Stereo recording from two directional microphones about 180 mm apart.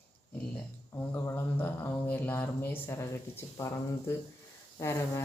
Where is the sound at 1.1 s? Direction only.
15° left (ahead or behind).